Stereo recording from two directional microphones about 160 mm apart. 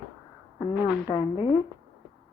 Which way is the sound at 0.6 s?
25° left (ahead or behind).